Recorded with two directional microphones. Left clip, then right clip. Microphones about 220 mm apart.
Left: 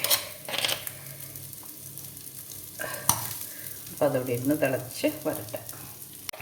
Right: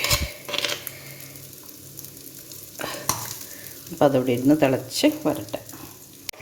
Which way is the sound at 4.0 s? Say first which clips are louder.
Right 6 dB; 50° right (ahead or behind).